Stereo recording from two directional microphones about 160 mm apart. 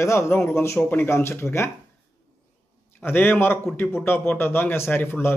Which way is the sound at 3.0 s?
15° left (ahead or behind).